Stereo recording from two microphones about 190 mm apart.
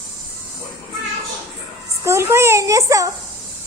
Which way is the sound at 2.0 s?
15° right (ahead or behind).